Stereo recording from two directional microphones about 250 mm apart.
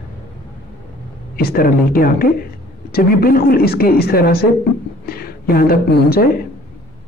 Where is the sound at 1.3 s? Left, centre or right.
Left.